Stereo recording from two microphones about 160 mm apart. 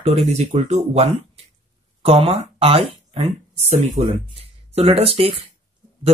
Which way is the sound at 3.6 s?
45° right (ahead or behind).